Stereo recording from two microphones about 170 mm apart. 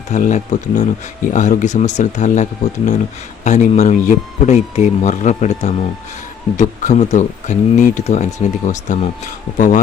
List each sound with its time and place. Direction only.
0.1 s speech: 45° left (ahead or behind)